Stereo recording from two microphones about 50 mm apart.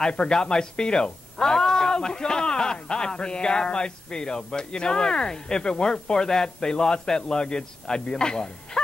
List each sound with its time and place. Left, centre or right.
0.0 s speech: centre